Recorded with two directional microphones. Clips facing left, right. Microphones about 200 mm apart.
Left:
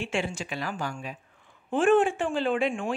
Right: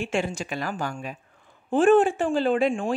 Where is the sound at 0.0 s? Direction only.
45° right (ahead or behind).